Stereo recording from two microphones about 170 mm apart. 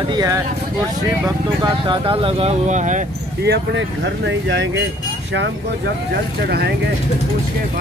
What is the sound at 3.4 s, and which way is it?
Speech, 90° right.